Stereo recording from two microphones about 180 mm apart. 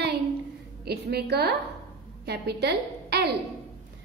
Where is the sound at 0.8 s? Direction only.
65° right (ahead or behind).